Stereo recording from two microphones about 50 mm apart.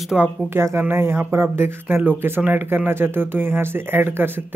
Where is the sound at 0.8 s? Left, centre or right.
Right.